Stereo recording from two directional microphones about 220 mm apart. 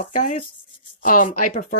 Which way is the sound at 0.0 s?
35° left (ahead or behind).